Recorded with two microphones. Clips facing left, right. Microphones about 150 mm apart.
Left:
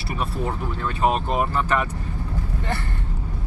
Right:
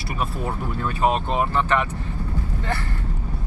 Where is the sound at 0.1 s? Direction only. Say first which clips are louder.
Left 1 dB; centre (ahead or behind).